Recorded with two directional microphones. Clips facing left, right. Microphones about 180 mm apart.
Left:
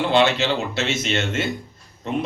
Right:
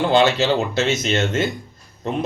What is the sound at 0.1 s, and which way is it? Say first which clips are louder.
Speech: right 2 dB; 40° right (ahead or behind).